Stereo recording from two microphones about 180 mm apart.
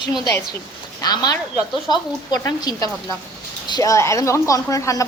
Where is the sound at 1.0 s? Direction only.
20° left (ahead or behind).